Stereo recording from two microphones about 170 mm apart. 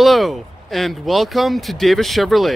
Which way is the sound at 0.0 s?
Centre (ahead or behind).